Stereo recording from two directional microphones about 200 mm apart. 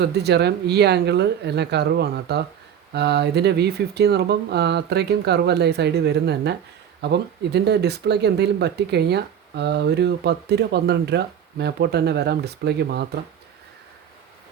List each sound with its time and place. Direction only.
0.0 s speech: 55° right (ahead or behind)